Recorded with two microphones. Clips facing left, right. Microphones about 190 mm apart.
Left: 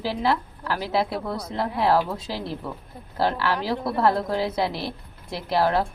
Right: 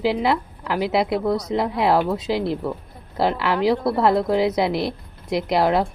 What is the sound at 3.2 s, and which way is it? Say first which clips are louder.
A woman's voice: right 4 dB; 15° right (ahead or behind).